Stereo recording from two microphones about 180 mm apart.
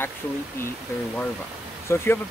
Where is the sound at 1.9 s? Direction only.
15° left (ahead or behind).